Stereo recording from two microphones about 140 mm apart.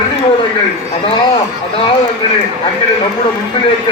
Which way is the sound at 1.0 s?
40° left (ahead or behind).